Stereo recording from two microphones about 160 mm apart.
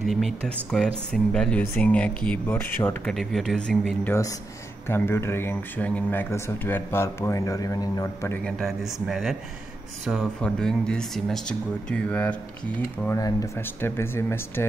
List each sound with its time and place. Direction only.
0.0 s speech: centre (ahead or behind)
3.1 s speech: centre (ahead or behind); by 8.4 s 20° left (ahead or behind)
8.5 s speech: centre (ahead or behind)
13.0 s speech: 20° left (ahead or behind)